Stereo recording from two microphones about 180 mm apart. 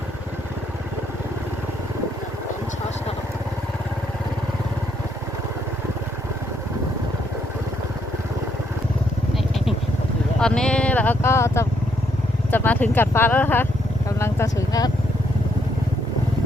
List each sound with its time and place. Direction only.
10.4 s speech: 5° left (ahead or behind); by 14.9 s 20° left (ahead or behind)